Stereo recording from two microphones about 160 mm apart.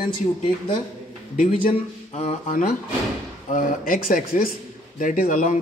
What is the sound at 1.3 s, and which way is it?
Speech, 60° left (ahead or behind).